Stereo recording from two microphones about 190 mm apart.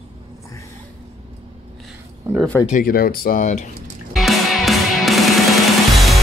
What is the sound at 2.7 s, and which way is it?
Speech, 50° left (ahead or behind).